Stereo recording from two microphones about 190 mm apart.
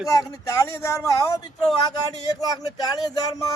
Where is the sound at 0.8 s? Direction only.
15° left (ahead or behind).